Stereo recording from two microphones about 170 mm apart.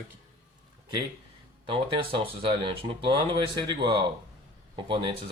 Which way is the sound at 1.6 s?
30° right (ahead or behind).